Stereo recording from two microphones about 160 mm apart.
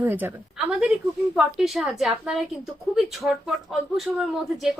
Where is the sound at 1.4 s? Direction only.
Centre (ahead or behind).